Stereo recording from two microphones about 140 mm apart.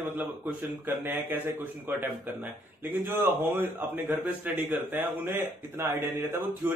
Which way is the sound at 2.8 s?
15° right (ahead or behind).